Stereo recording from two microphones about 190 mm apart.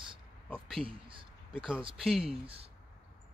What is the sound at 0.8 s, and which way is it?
Speech, 25° right (ahead or behind).